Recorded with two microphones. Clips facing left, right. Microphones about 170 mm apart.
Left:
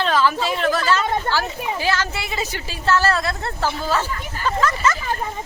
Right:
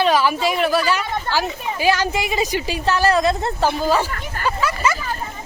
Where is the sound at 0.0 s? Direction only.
10° right (ahead or behind).